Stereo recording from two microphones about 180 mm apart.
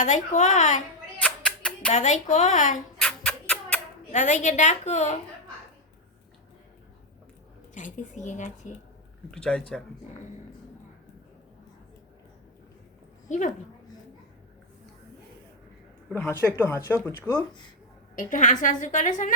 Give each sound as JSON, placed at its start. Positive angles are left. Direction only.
{"t": 0.0, "sound": "a woman's voice", "side_deg": 45}
{"t": 1.2, "sound": "music", "side_deg": 5}
{"t": 1.9, "sound": "a woman's voice", "side_deg": 40}
{"t": 3.0, "sound": "a sound", "side_deg": 5}
{"t": 4.1, "sound": "a woman's voice", "side_deg": 45}
{"t": 7.7, "sound": "a woman's voice", "side_deg": 45}
{"t": 9.3, "sound": "speech", "side_deg": 5}
{"t": 13.2, "sound": "a woman's voice", "side_deg": 45}
{"t": 16.0, "sound": "speech", "side_deg": 15}
{"t": 18.2, "sound": "a woman's voice", "side_deg": 45}